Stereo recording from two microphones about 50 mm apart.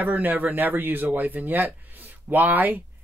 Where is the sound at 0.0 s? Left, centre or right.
Right.